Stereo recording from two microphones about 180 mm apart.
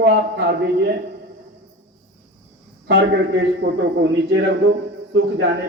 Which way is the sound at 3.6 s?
80° right.